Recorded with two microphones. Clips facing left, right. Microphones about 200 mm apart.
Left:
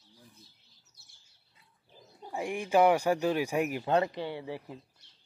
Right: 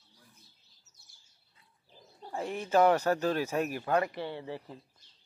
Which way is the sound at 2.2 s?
15° left (ahead or behind).